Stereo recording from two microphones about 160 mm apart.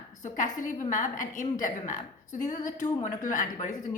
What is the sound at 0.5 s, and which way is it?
Speech, 50° left (ahead or behind).